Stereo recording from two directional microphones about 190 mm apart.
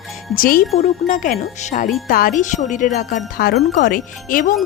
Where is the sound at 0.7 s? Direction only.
40° left (ahead or behind).